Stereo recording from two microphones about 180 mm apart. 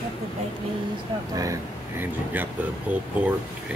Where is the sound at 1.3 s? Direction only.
20° right (ahead or behind).